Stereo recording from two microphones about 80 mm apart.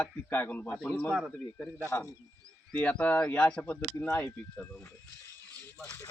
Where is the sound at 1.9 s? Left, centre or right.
Left.